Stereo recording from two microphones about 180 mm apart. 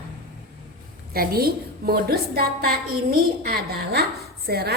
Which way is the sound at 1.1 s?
55° right (ahead or behind).